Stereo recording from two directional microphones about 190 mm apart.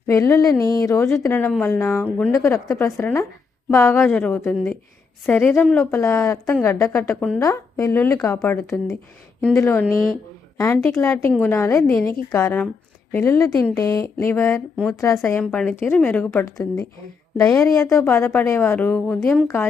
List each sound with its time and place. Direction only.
0.1 s a woman's voice: 15° left (ahead or behind)
10.9 s a woman's voice: 15° left (ahead or behind)